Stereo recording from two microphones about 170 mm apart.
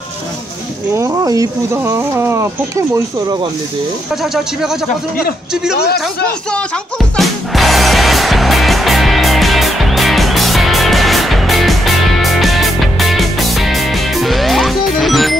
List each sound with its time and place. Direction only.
0.9 s speech: 15° right (ahead or behind)
4.2 s speech: centre (ahead or behind)
5.8 s a man's voice: 70° left (ahead or behind)
7.2 s music: centre (ahead or behind)